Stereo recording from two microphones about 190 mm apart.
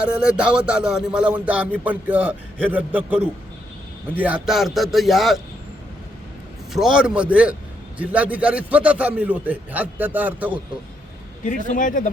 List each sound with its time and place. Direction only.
0.0 s a man's voice: 5° right (ahead or behind)
6.7 s a man's voice: 5° right (ahead or behind)
11.4 s a man's voice: 45° left (ahead or behind)